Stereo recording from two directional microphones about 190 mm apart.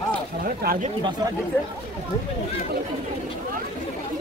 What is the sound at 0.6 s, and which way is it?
Speech, 50° right (ahead or behind).